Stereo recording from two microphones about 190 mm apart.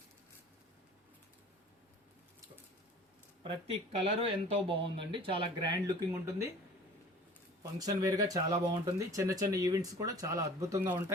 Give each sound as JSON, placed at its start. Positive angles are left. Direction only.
{"t": 3.4, "sound": "speech", "side_deg": -30}
{"t": 6.1, "sound": "speech", "side_deg": -15}
{"t": 7.6, "sound": "speech", "side_deg": -20}